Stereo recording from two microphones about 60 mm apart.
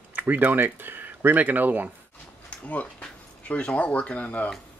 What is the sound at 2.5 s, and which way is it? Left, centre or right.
Speech, left.